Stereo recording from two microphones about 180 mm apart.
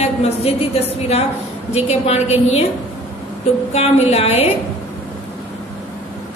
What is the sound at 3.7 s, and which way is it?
Speech, 35° left (ahead or behind).